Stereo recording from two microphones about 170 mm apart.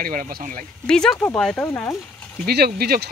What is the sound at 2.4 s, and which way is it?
Speech, 65° right (ahead or behind).